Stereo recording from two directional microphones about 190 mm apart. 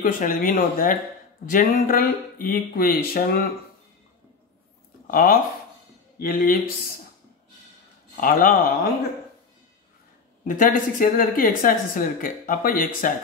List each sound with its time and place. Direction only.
0.0 s speech: 45° left (ahead or behind)
5.0 s speech: 50° left (ahead or behind)
8.2 s speech: 45° left (ahead or behind)
10.4 s speech: 45° left (ahead or behind)